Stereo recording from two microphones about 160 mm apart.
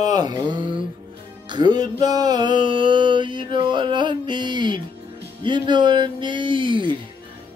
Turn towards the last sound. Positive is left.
turn(degrees=-30)  # may be behind; listen again after turning